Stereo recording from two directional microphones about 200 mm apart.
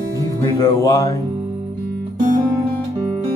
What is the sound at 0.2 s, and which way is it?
Speech, 20° left (ahead or behind).